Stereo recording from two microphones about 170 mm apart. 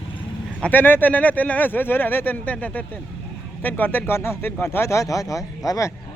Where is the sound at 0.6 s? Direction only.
10° left (ahead or behind).